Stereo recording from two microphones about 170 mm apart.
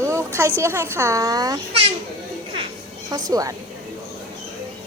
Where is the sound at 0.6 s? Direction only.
15° right (ahead or behind).